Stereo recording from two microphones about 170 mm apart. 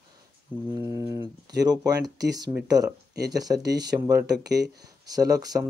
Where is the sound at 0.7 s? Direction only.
20° right (ahead or behind).